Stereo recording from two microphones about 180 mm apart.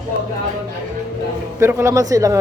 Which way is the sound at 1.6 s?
15° right (ahead or behind).